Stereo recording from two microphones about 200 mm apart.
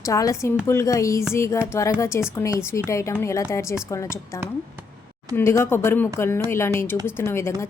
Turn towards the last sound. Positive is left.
turn(degrees=15)  # may be behind; listen again after turning